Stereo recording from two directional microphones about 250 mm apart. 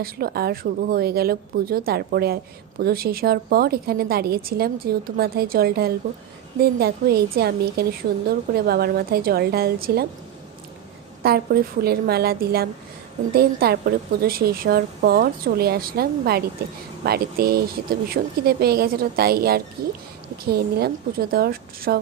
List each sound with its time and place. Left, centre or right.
0.0 s speech: right
11.2 s speech: right